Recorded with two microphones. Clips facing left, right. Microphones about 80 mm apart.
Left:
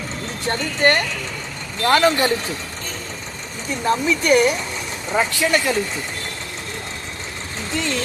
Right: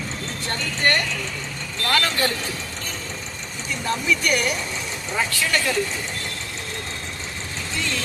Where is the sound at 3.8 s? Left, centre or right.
Left.